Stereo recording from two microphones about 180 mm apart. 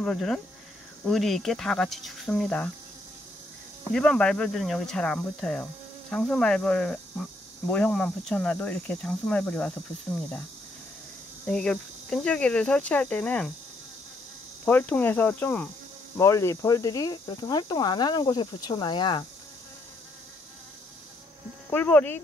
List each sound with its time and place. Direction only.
0.0 s speech: centre (ahead or behind)
3.9 s speech: 5° left (ahead or behind)
11.4 s speech: 5° left (ahead or behind)
14.6 s speech: 10° left (ahead or behind); by 19.2 s 25° left (ahead or behind)
21.6 s speech: 10° left (ahead or behind)